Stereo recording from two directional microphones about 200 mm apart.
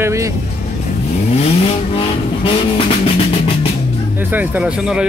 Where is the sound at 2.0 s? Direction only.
25° left (ahead or behind).